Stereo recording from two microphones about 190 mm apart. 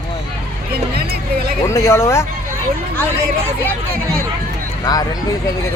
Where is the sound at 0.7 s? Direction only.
55° right (ahead or behind).